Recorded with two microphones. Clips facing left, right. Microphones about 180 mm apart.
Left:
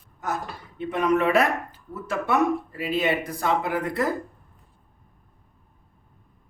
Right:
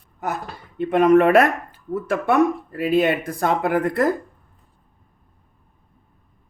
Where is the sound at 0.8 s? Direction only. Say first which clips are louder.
Right 8 dB; 55° right (ahead or behind).